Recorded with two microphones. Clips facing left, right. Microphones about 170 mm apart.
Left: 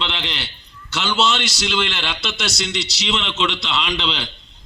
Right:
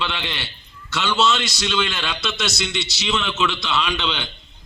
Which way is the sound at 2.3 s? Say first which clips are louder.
Even; centre (ahead or behind).